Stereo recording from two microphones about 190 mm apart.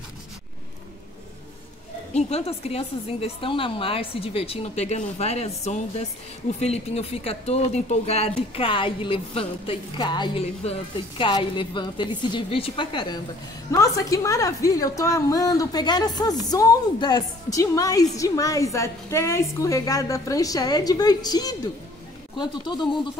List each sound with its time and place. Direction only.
2.1 s a woman's voice: 35° left (ahead or behind)